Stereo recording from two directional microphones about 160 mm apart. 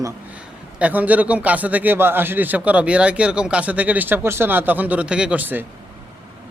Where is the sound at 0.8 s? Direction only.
10° right (ahead or behind).